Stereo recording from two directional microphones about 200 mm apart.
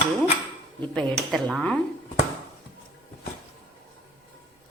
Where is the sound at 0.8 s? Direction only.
5° left (ahead or behind).